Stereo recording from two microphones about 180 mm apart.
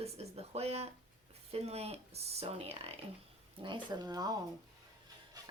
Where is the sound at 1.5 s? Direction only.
35° right (ahead or behind).